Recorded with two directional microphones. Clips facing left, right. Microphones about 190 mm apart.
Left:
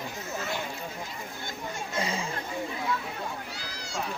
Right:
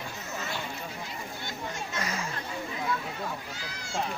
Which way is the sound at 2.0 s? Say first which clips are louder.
Left 4 dB; 30° left (ahead or behind).